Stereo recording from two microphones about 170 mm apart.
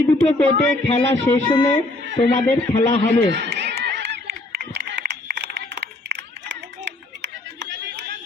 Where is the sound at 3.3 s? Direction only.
85° right.